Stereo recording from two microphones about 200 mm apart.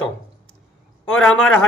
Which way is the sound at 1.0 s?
5° left (ahead or behind).